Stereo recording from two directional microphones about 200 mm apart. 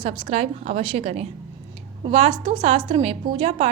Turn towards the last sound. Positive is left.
turn(degrees=-30)  # may be behind; listen again after turning